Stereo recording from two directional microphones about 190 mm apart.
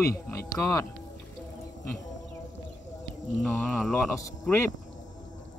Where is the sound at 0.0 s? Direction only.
15° left (ahead or behind).